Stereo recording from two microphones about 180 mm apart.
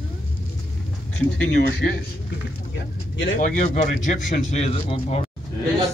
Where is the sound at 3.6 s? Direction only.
40° left (ahead or behind).